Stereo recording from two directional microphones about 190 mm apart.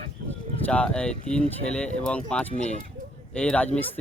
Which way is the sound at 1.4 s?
5° left (ahead or behind).